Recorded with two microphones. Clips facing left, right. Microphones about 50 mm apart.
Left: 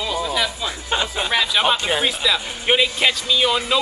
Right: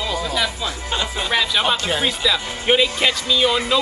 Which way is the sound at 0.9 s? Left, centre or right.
Centre.